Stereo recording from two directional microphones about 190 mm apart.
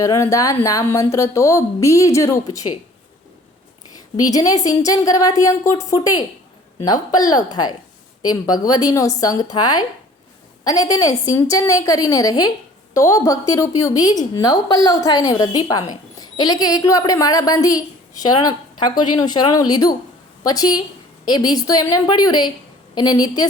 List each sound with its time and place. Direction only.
0.0 s a woman's voice: 15° left (ahead or behind)
4.2 s a woman's voice: 20° left (ahead or behind)